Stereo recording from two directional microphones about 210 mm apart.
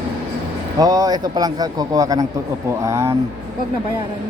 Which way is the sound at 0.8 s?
20° right (ahead or behind).